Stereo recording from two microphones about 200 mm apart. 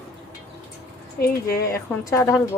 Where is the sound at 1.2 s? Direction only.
50° left (ahead or behind).